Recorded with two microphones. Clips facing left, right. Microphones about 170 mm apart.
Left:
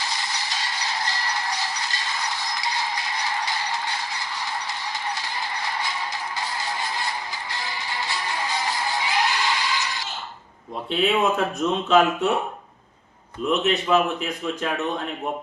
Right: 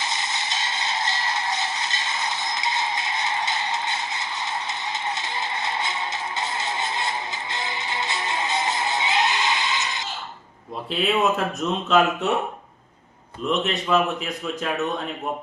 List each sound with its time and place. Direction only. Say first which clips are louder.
0.0 s a sound: right 1 dB; 20° right (ahead or behind)
6.4 s music: right 2 dB; 20° right (ahead or behind)
10.9 s a man's voice: left 1 dB; centre (ahead or behind)
13.5 s a man's voice: left 2 dB; centre (ahead or behind)